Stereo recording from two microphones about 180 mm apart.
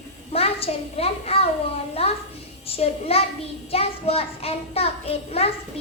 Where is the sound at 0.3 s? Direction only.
35° left (ahead or behind).